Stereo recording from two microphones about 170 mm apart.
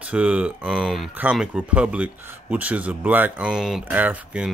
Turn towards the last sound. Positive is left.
turn(degrees=-10)  # may be behind; listen again after turning